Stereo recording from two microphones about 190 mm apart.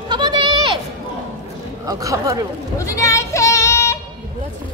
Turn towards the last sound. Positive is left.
turn(degrees=15)  # may be behind; listen again after turning